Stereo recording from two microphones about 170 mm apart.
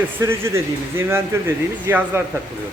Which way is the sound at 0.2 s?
15° right (ahead or behind).